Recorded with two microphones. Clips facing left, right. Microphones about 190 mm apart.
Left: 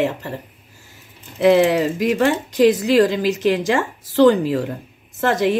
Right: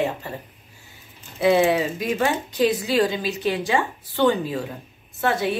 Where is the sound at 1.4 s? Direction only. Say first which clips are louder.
Left 4 dB; 90° left.